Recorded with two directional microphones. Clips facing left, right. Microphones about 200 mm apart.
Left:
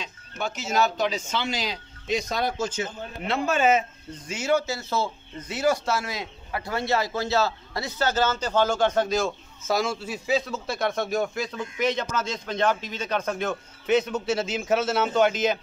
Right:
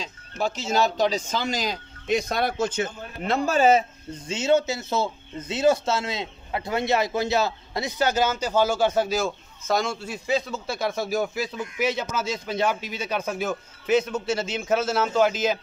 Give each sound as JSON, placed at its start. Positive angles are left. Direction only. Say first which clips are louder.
{"t": 0.0, "sound": "speech", "louder": "right 4 dB", "side_deg": -30}
{"t": 3.3, "sound": "speech", "louder": "right 3 dB", "side_deg": -40}
{"t": 4.3, "sound": "speech", "louder": "right 3 dB", "side_deg": -25}